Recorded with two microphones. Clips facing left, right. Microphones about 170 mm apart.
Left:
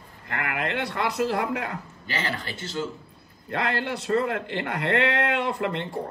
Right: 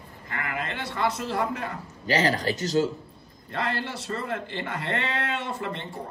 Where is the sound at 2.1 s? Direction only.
40° right (ahead or behind).